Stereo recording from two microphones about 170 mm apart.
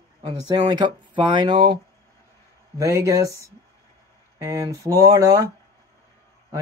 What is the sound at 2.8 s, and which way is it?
Speech, 20° right (ahead or behind).